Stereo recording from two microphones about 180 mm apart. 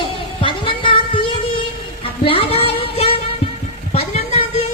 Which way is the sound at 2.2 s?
30° left (ahead or behind).